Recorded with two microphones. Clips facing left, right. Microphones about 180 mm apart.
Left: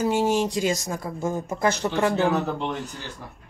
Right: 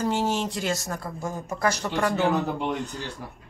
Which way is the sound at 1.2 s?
25° left (ahead or behind).